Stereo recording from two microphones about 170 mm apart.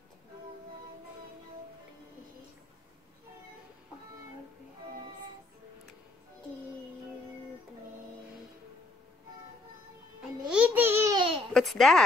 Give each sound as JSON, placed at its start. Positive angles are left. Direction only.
{"t": 10.5, "sound": "a sound", "side_deg": -10}
{"t": 11.1, "sound": "babbling", "side_deg": -35}
{"t": 11.5, "sound": "speech", "side_deg": 0}